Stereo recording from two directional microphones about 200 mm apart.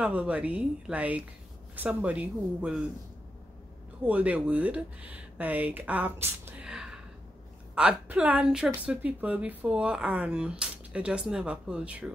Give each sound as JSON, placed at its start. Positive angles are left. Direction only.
{"t": 0.0, "sound": "speech", "side_deg": -5}
{"t": 4.0, "sound": "a woman's voice", "side_deg": -5}